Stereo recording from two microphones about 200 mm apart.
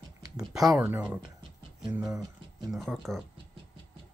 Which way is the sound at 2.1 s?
15° right (ahead or behind).